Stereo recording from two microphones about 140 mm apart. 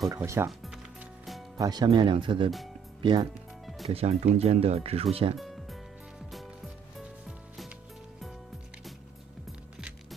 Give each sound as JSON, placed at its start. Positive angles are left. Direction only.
{"t": 0.1, "sound": "speech", "side_deg": -20}
{"t": 1.6, "sound": "speech", "side_deg": -30}
{"t": 3.6, "sound": "music", "side_deg": 0}
{"t": 3.9, "sound": "speech", "side_deg": -45}
{"t": 7.2, "sound": "music", "side_deg": 0}